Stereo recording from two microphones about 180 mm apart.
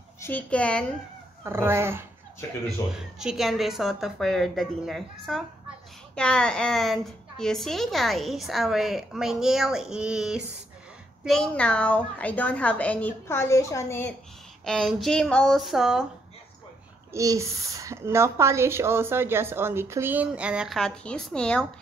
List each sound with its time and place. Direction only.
0.2 s a woman's voice: 10° left (ahead or behind)
1.4 s a woman's voice: 15° right (ahead or behind)
2.9 s a woman's voice: 5° right (ahead or behind); by 14.1 s 15° left (ahead or behind)
14.6 s a woman's voice: centre (ahead or behind)
17.1 s a woman's voice: 15° right (ahead or behind); by 21.6 s 5° left (ahead or behind)